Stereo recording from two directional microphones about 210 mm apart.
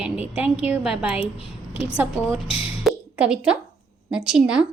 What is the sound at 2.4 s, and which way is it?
Speech, 25° left (ahead or behind).